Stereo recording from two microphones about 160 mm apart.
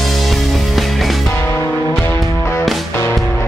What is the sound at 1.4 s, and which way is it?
Music, 15° left (ahead or behind).